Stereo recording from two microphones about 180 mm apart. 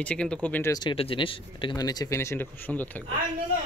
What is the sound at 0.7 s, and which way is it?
Speech, 25° left (ahead or behind).